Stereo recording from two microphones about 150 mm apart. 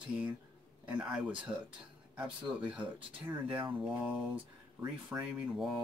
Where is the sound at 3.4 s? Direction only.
35° right (ahead or behind).